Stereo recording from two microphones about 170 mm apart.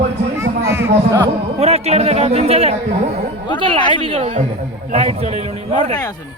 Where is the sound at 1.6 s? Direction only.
40° right (ahead or behind).